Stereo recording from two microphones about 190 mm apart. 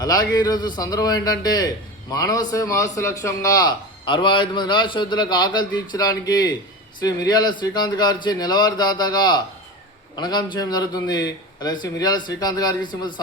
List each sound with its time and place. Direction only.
0.0 s a man's voice: 20° left (ahead or behind)